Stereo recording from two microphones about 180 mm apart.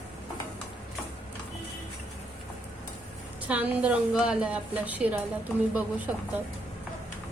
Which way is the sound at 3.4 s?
10° right (ahead or behind).